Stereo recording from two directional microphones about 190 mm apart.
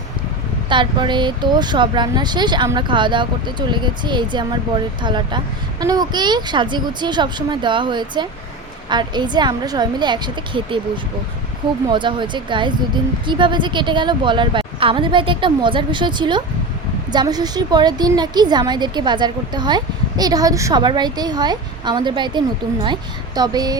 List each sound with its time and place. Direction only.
0.7 s a woman's voice: 25° right (ahead or behind)